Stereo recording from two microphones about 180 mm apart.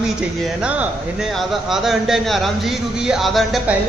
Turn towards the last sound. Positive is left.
turn(degrees=0)  # may be behind; listen again after turning